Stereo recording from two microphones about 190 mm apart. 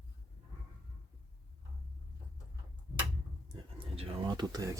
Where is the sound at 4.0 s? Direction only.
25° right (ahead or behind).